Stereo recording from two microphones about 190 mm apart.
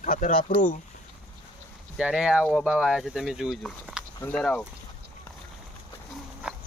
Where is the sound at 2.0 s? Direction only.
5° right (ahead or behind).